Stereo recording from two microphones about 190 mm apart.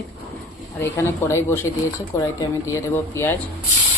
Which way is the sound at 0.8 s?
15° left (ahead or behind).